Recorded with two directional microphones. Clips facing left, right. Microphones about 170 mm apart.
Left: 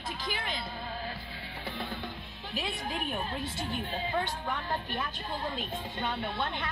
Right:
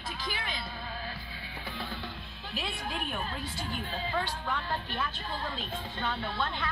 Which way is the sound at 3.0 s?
45° left (ahead or behind).